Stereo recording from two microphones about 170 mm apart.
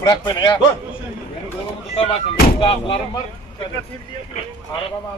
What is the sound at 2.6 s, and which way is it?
Speech, 30° left (ahead or behind).